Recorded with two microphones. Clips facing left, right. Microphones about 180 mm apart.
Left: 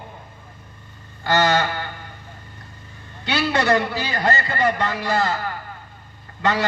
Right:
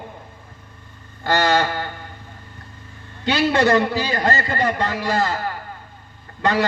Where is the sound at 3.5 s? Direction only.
45° right (ahead or behind).